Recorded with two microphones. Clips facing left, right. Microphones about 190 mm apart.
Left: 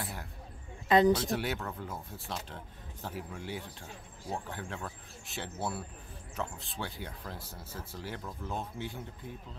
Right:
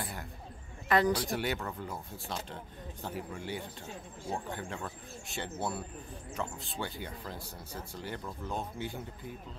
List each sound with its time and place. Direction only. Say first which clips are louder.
0.0 s a sound: even; centre (ahead or behind)
0.8 s speech: left 4 dB; 20° left (ahead or behind)
1.3 s speech: even; centre (ahead or behind)